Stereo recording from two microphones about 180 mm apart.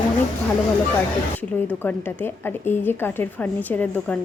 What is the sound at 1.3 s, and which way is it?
A woman's voice, 10° left (ahead or behind).